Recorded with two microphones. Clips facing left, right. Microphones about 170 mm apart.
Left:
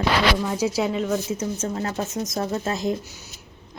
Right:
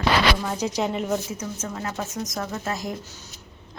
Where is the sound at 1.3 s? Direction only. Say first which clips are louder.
Left 5 dB; 30° left (ahead or behind).